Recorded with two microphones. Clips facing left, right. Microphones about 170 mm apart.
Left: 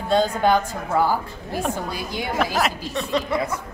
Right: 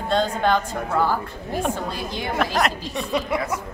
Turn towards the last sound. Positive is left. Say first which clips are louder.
# left 1 dB
turn(degrees=-10)  # may be behind; listen again after turning